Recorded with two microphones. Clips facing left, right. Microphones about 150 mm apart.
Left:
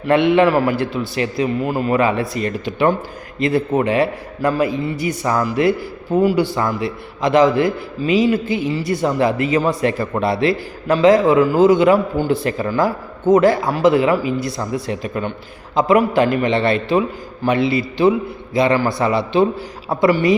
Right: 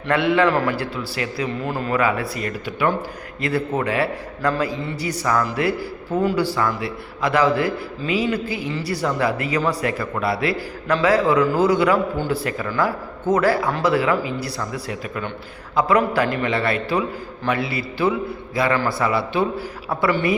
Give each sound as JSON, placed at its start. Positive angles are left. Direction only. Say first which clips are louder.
{"t": 0.1, "sound": "a man's voice", "louder": "left 5 dB", "side_deg": 20}
{"t": 0.8, "sound": "a man's voice", "louder": "left 6 dB", "side_deg": 20}